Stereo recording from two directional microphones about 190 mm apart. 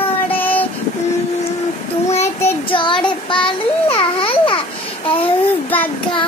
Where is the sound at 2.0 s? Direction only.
35° left (ahead or behind).